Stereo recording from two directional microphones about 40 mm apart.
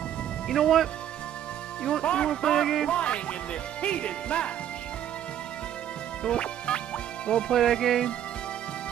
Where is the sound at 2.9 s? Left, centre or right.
Left.